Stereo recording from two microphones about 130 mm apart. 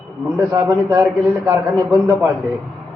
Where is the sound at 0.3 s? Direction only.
20° right (ahead or behind).